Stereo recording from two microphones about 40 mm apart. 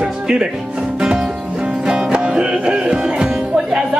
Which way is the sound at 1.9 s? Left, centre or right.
Centre.